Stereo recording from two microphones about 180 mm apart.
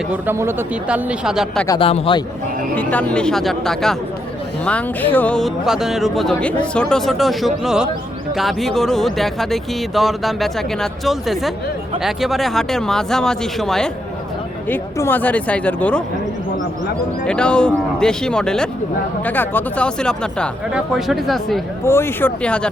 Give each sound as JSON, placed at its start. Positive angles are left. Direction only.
{"t": 0.1, "sound": "speech", "side_deg": -10}
{"t": 1.6, "sound": "a man's voice", "side_deg": 20}
{"t": 2.7, "sound": "speech", "side_deg": 10}
{"t": 17.2, "sound": "speech", "side_deg": 5}
{"t": 21.8, "sound": "speech", "side_deg": 15}